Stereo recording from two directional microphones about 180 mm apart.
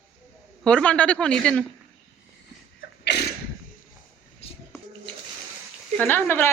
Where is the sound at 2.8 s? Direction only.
70° left (ahead or behind).